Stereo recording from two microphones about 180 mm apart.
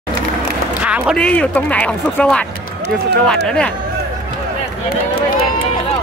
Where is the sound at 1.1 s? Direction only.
5° left (ahead or behind).